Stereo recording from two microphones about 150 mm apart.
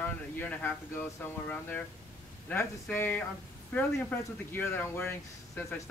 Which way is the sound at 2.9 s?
15° left (ahead or behind).